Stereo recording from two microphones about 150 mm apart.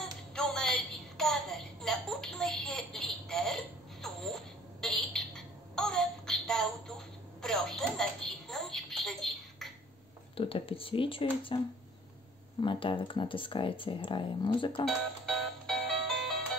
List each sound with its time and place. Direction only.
0.0 s a sound: 5° left (ahead or behind)
7.4 s telephone: 5° left (ahead or behind)
10.3 s speech: 40° left (ahead or behind)
12.6 s speech: 35° left (ahead or behind)
14.9 s music: centre (ahead or behind)